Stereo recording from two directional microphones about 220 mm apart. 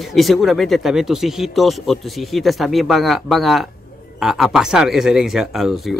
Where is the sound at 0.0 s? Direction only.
Centre (ahead or behind).